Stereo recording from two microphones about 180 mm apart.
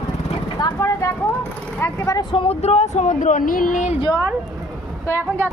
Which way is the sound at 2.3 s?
30° left (ahead or behind).